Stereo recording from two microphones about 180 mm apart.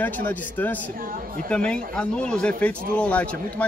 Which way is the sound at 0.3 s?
10° left (ahead or behind).